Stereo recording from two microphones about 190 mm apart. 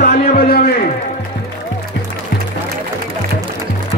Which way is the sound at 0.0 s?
55° left (ahead or behind).